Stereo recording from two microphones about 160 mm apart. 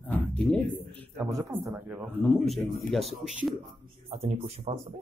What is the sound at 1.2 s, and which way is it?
A man's voice, 15° right (ahead or behind).